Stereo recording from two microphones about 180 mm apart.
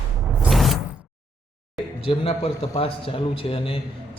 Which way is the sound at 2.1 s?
30° left (ahead or behind).